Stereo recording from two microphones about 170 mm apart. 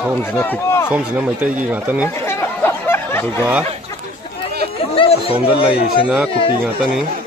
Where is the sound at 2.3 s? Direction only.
15° left (ahead or behind).